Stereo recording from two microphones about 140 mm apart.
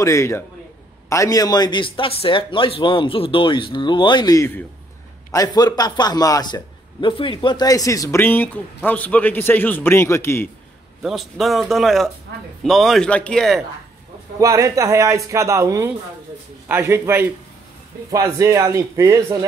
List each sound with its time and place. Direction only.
0.0 s a man's voice: 20° left (ahead or behind)
11.0 s a man's voice: centre (ahead or behind)
14.4 s a man's voice: 25° right (ahead or behind)